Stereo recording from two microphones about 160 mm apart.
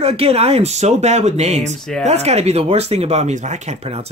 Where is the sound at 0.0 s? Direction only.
40° right (ahead or behind).